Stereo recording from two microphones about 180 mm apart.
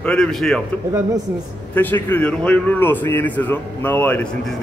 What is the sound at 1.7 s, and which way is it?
A man's voice, 10° left (ahead or behind).